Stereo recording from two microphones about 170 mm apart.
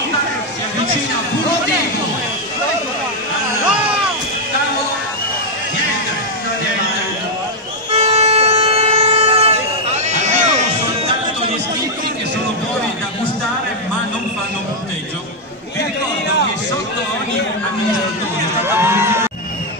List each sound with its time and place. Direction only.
7.9 s vehicle: 40° right (ahead or behind)
18.7 s crowd: 15° right (ahead or behind)